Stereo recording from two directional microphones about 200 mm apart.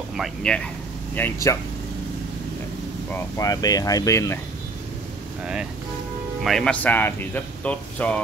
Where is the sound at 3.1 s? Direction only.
15° left (ahead or behind).